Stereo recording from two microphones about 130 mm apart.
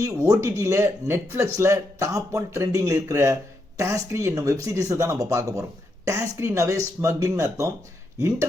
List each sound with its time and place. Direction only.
0.0 s speech: 25° right (ahead or behind)